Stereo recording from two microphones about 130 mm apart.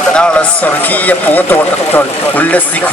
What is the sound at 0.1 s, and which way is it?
Speech, 10° left (ahead or behind).